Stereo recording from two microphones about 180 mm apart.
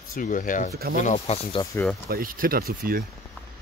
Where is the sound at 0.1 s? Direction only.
50° left (ahead or behind).